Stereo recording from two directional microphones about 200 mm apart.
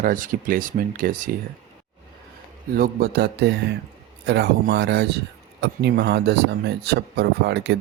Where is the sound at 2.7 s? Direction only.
50° right (ahead or behind).